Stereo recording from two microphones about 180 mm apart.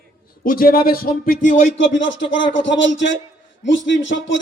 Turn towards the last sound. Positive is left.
turn(degrees=90)